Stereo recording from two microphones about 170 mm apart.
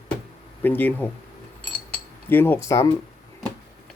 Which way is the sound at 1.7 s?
10° left (ahead or behind).